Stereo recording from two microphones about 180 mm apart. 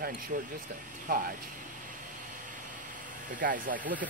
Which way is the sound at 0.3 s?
50° right (ahead or behind).